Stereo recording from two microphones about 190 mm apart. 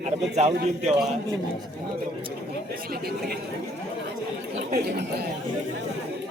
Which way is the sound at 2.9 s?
55° right (ahead or behind).